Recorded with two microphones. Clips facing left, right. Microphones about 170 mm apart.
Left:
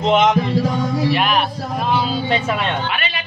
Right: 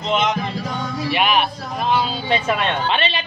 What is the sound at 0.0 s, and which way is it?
Music, 55° left (ahead or behind).